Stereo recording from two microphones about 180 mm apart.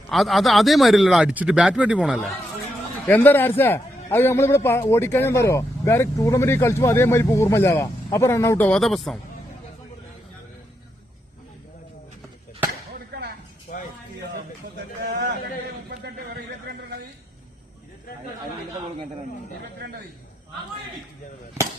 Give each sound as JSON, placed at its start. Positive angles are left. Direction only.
{"t": 0.1, "sound": "speech", "side_deg": 0}
{"t": 3.1, "sound": "a man's voice", "side_deg": 10}
{"t": 12.9, "sound": "chop", "side_deg": -60}